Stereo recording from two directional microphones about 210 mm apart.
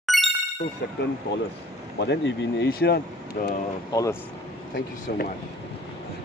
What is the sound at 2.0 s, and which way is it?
Speech, 55° left (ahead or behind).